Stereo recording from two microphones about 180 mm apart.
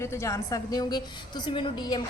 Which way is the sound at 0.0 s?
15° left (ahead or behind).